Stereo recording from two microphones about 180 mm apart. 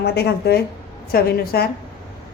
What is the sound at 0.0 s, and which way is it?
A woman's voice, 65° left (ahead or behind).